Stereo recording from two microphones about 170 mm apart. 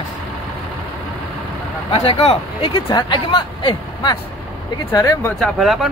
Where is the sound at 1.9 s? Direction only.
35° left (ahead or behind); by 5.4 s 15° left (ahead or behind).